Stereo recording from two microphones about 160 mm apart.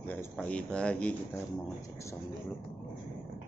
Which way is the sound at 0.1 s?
5° left (ahead or behind).